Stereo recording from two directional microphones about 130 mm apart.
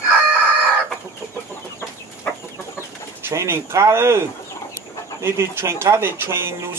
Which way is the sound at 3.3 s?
20° right (ahead or behind).